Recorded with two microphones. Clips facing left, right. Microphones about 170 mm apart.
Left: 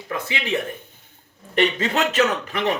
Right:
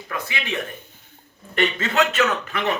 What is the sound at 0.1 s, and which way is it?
A man's voice, 25° left (ahead or behind).